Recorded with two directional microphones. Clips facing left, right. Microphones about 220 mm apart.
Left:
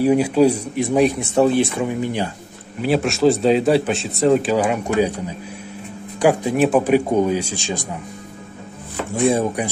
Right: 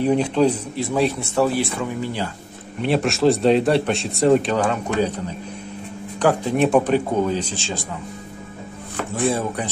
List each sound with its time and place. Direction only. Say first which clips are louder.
0.0 s speech: left 3 dB; 10° left (ahead or behind)
2.8 s speech: left 2 dB; centre (ahead or behind)
6.1 s speech: left 2 dB; 10° left (ahead or behind)
8.9 s chopping: left 3 dB; centre (ahead or behind)
9.3 s speech: left 4 dB; 15° left (ahead or behind)